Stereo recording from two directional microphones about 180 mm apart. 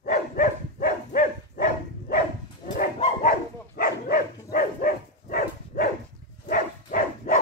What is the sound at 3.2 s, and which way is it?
Dog, 55° left (ahead or behind).